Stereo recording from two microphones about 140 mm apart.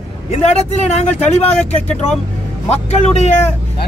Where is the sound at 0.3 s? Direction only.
50° left (ahead or behind).